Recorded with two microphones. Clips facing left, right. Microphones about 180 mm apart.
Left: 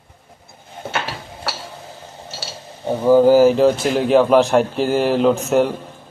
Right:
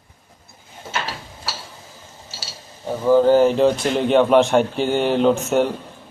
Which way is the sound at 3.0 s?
10° left (ahead or behind).